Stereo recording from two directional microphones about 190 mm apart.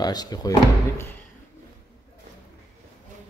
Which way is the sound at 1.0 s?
10° left (ahead or behind).